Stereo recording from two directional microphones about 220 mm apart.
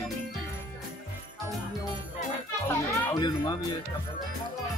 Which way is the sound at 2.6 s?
20° left (ahead or behind).